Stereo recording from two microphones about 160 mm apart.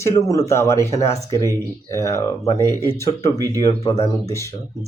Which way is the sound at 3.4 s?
20° right (ahead or behind).